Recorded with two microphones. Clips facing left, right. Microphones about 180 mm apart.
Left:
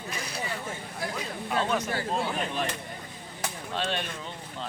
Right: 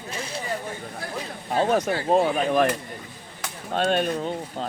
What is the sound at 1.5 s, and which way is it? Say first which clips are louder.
Speech: right 7 dB; 40° right (ahead or behind).